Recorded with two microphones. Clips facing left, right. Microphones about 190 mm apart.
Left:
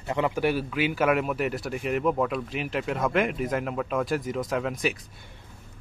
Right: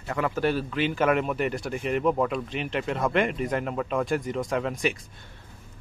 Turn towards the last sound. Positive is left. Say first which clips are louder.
# right 1 dB
turn(degrees=0)  # may be behind; listen again after turning